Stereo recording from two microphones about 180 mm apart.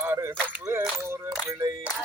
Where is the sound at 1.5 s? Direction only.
20° right (ahead or behind).